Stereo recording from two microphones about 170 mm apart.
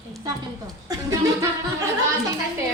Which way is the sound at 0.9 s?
20° right (ahead or behind).